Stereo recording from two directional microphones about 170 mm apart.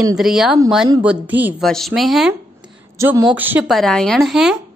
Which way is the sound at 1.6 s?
Centre (ahead or behind).